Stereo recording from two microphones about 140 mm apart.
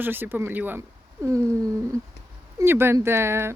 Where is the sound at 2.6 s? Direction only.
15° right (ahead or behind).